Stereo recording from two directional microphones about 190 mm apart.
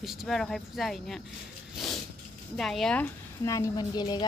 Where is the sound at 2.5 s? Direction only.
Centre (ahead or behind).